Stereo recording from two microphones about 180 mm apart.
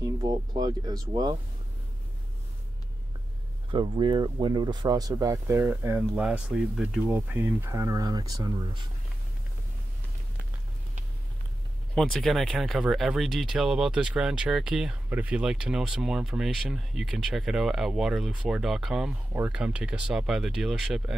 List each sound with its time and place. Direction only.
0.0 s speech: 20° right (ahead or behind)
3.7 s speech: 25° right (ahead or behind)
11.9 s speech: centre (ahead or behind)